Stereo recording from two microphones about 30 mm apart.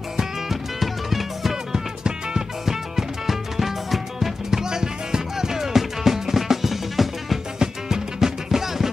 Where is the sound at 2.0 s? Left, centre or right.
Right.